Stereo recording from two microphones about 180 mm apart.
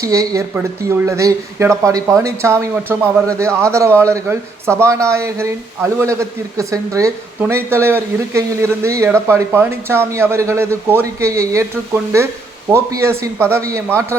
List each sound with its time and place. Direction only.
0.0 s speech: 20° right (ahead or behind)
12.7 s speech: 15° right (ahead or behind)